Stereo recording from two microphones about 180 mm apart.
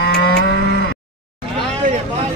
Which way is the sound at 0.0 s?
70° left (ahead or behind).